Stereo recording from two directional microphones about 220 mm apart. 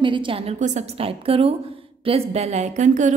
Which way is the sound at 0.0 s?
20° right (ahead or behind).